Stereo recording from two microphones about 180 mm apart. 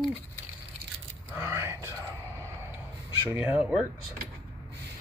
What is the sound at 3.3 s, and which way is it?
Speech, 10° right (ahead or behind).